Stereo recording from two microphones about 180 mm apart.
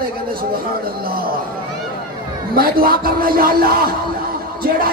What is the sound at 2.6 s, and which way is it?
Speech, 55° right (ahead or behind).